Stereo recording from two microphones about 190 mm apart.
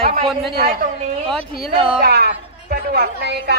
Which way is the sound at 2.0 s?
60° right (ahead or behind).